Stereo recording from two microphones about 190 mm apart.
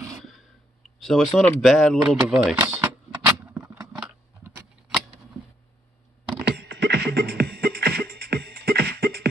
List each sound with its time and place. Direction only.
0.9 s speech: centre (ahead or behind)
3.3 s vehicle: 15° right (ahead or behind)
4.0 s a sound: 5° right (ahead or behind)
6.4 s music: 60° right (ahead or behind)